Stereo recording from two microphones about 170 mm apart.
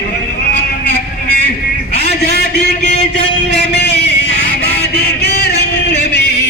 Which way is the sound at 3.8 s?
75° left (ahead or behind).